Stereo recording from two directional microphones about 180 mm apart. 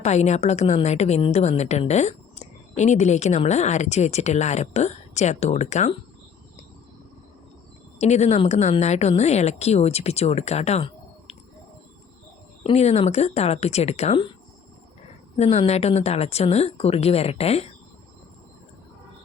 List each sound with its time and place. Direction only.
0.0 s a woman's voice: 40° left (ahead or behind)
7.9 s a woman's voice: 40° left (ahead or behind)
12.6 s a woman's voice: 35° left (ahead or behind)
15.4 s a woman's voice: 35° left (ahead or behind)